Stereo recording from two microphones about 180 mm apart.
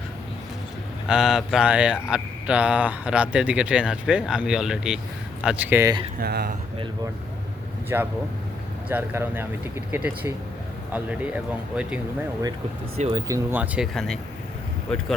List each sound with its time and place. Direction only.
1.0 s speech: 5° right (ahead or behind)
6.1 s speech: 60° right (ahead or behind)
7.9 s speech: 15° right (ahead or behind)
13.1 s speech: 20° right (ahead or behind); by 15.0 s 5° left (ahead or behind)